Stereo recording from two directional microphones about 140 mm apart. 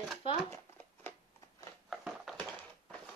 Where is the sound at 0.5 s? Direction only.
15° left (ahead or behind).